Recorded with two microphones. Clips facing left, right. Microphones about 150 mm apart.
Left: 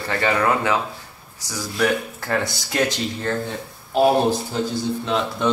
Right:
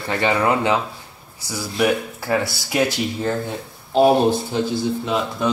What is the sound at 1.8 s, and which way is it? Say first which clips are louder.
Speech: right 2 dB; 10° right (ahead or behind).